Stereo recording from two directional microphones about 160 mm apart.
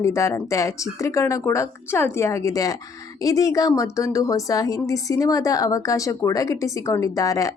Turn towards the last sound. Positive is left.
turn(degrees=20)  # may be behind; listen again after turning